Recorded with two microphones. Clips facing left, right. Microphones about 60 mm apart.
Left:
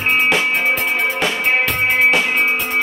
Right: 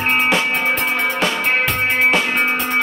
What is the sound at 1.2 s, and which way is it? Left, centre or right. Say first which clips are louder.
Music: even; centre.